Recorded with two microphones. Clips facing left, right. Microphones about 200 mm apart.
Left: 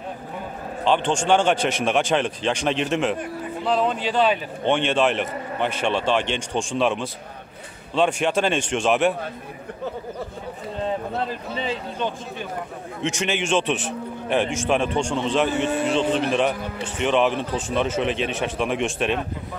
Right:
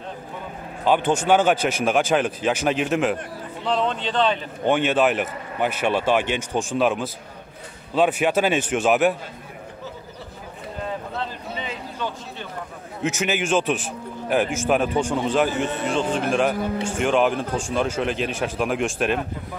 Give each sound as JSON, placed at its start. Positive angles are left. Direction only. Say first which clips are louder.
{"t": 0.8, "sound": "speech", "louder": "right 1 dB", "side_deg": -5}
{"t": 4.6, "sound": "speech", "louder": "right 1 dB", "side_deg": -5}
{"t": 11.6, "sound": "a sound", "louder": "left 4 dB", "side_deg": 30}
{"t": 13.0, "sound": "speech", "louder": "right 1 dB", "side_deg": -5}